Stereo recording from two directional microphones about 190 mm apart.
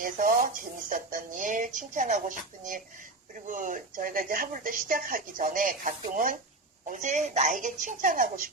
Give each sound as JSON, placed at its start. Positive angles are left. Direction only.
{"t": 0.0, "sound": "a woman's voice", "side_deg": -45}